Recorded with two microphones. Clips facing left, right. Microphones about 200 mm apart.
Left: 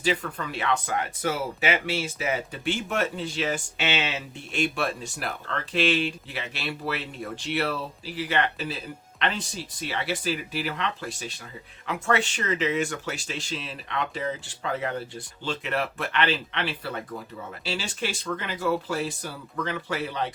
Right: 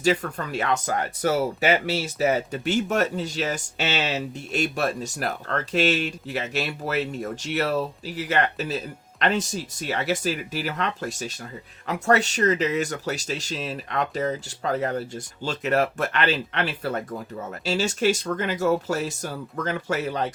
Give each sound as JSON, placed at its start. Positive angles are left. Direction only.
{"t": 0.0, "sound": "speech", "side_deg": -45}